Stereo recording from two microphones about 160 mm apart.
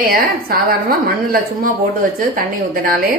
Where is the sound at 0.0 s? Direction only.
65° right (ahead or behind).